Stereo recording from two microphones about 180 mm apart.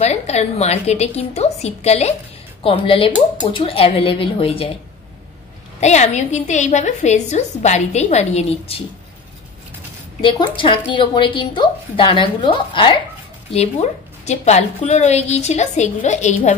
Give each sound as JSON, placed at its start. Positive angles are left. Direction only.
{"t": 0.0, "sound": "a woman's voice", "side_deg": 40}
{"t": 5.8, "sound": "a woman's voice", "side_deg": 40}
{"t": 10.2, "sound": "a woman's voice", "side_deg": 30}